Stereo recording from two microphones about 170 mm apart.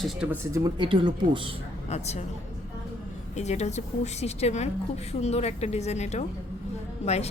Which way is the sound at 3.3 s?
40° left (ahead or behind).